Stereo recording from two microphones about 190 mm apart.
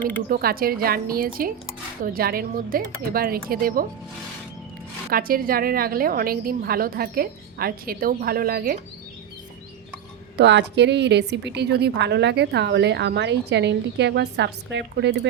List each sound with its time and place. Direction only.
0.3 s a woman's voice: 50° right (ahead or behind)
5.1 s a woman's voice: 50° right (ahead or behind)
10.3 s a woman's voice: 65° right (ahead or behind)